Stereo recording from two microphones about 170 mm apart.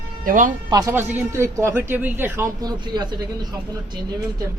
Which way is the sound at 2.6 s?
25° right (ahead or behind).